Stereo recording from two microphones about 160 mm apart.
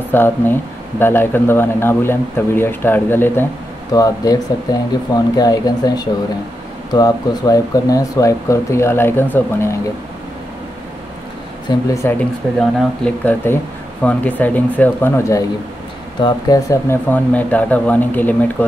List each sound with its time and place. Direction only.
0.1 s speech: 15° left (ahead or behind)
3.9 s speech: 25° left (ahead or behind)
11.9 s speech: 15° left (ahead or behind)